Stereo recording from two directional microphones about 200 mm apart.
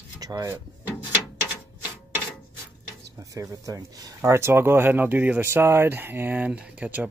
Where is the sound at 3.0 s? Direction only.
15° right (ahead or behind).